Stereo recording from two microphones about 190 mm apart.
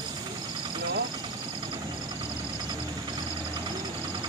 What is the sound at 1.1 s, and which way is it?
Vehicle, 25° right (ahead or behind).